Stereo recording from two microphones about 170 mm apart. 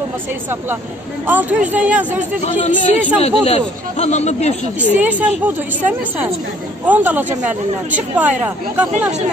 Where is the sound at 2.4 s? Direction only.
40° left (ahead or behind).